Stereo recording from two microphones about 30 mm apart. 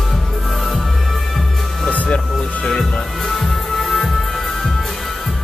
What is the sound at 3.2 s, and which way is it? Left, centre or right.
Music, centre.